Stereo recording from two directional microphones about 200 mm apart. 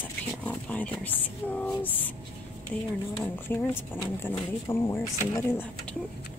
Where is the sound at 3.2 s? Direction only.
10° left (ahead or behind).